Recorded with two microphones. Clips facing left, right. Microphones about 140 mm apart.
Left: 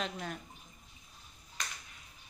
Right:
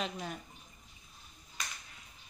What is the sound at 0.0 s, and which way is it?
Speech, 5° right (ahead or behind).